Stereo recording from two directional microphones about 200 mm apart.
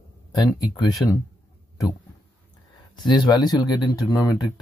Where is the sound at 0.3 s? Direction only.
20° left (ahead or behind).